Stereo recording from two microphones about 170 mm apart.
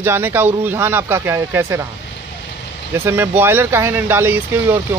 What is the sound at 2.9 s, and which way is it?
Speech, 15° right (ahead or behind).